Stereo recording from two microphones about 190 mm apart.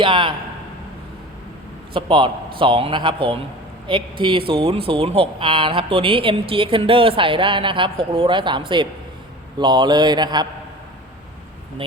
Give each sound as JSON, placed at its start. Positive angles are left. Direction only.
{"t": 0.0, "sound": "speech", "side_deg": -25}
{"t": 1.9, "sound": "speech", "side_deg": -25}